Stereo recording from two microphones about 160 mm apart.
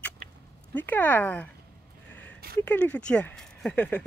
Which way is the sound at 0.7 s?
10° left (ahead or behind).